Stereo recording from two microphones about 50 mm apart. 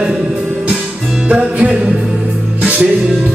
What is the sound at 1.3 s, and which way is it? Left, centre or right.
Music, right.